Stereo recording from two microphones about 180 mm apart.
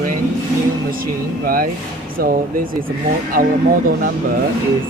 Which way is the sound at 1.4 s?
50° right (ahead or behind).